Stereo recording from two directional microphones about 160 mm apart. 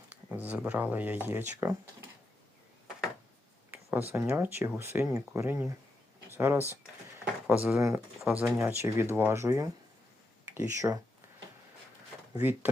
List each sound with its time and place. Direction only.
0.1 s speech: 10° right (ahead or behind)
4.1 s speech: 15° right (ahead or behind)